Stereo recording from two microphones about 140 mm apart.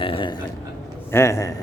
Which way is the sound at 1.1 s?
20° left (ahead or behind).